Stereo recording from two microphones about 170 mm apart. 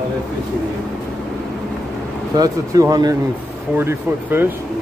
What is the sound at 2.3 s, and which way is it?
Speech, 20° right (ahead or behind).